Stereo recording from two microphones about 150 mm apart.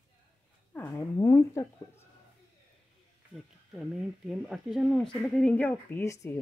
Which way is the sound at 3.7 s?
5° right (ahead or behind).